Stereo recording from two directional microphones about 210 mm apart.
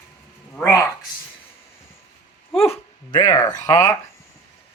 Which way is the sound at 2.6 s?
30° left (ahead or behind).